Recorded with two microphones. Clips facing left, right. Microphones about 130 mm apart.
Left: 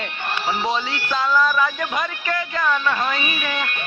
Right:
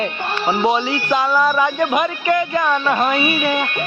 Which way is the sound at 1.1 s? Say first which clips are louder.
Right 3 dB; 20° right (ahead or behind).